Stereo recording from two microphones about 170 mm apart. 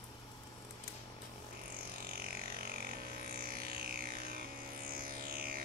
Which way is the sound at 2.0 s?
65° right (ahead or behind).